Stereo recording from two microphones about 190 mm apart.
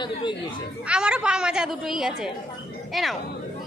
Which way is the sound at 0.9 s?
5° right (ahead or behind).